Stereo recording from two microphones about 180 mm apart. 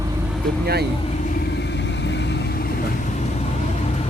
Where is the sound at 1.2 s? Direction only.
55° left (ahead or behind).